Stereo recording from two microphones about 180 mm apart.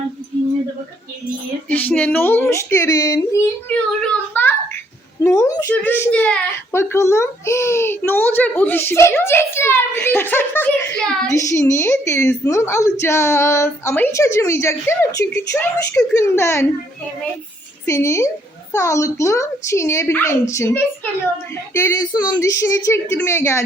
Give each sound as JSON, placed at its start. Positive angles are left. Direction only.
{"t": 1.7, "sound": "speech", "side_deg": 10}
{"t": 11.5, "sound": "speech", "side_deg": 15}
{"t": 17.8, "sound": "speech", "side_deg": 15}